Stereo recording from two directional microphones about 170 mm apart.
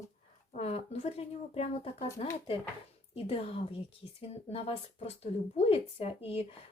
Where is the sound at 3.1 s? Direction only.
35° left (ahead or behind).